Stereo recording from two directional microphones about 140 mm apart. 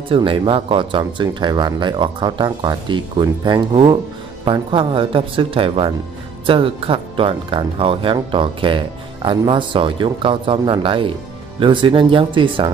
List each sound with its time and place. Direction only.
0.1 s speech: 40° right (ahead or behind)